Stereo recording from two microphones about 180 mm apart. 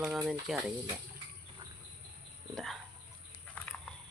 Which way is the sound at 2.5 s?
Centre (ahead or behind).